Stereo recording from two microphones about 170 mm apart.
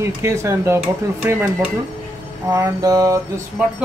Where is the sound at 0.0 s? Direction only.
15° right (ahead or behind).